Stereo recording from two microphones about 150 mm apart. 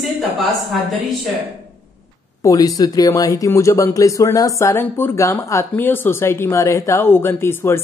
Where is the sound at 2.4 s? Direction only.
25° left (ahead or behind).